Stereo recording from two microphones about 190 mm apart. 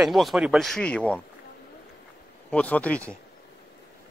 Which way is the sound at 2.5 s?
5° left (ahead or behind).